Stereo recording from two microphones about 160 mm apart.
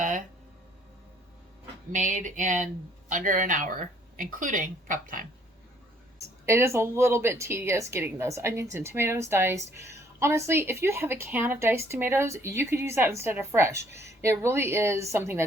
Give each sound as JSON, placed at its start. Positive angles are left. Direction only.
{"t": 1.9, "sound": "speech", "side_deg": -50}
{"t": 6.4, "sound": "a woman's voice", "side_deg": -15}